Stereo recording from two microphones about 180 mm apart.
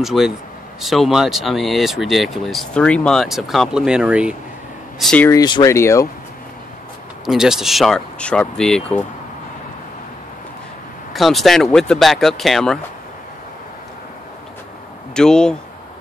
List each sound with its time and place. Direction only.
0.0 s speech: centre (ahead or behind)
5.3 s speech: 20° left (ahead or behind)
7.2 s speech: 5° right (ahead or behind)
11.1 s speech: centre (ahead or behind)
15.1 s speech: 5° left (ahead or behind)